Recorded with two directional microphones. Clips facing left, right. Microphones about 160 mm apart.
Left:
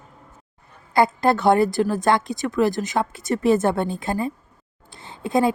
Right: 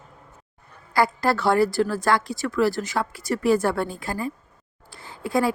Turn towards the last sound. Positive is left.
turn(degrees=20)  # may be behind; listen again after turning